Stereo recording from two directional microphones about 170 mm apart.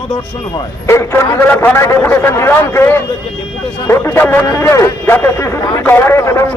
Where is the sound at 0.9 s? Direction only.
15° left (ahead or behind).